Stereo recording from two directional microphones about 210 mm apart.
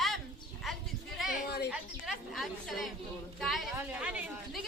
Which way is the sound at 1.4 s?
50° left (ahead or behind).